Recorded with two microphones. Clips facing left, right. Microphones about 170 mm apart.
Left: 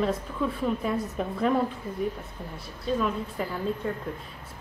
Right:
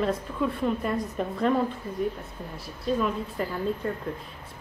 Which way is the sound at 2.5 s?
Centre (ahead or behind).